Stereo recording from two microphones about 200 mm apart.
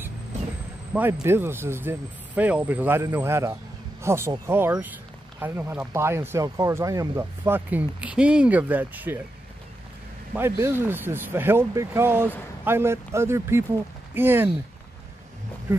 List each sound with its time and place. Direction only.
0.9 s speech: 10° right (ahead or behind)
10.3 s speech: 10° right (ahead or behind)